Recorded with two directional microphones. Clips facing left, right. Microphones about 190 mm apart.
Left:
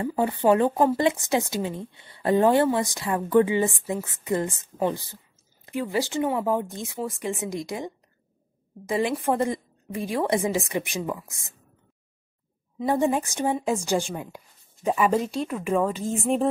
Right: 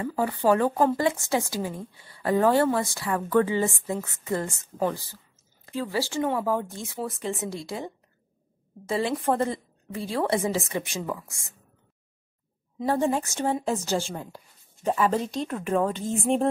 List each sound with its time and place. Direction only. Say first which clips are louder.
0.2 s a woman's voice: left 2 dB; 20° left (ahead or behind)
5.7 s a woman's voice: left 2 dB; 15° left (ahead or behind)
12.8 s a woman's voice: left 2 dB; 15° left (ahead or behind)